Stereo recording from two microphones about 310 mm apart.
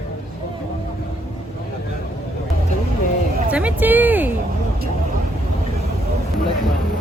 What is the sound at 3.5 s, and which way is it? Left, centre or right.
Speech, centre.